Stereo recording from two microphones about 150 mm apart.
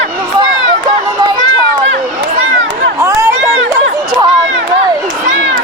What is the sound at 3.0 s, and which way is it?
Run, 20° right (ahead or behind).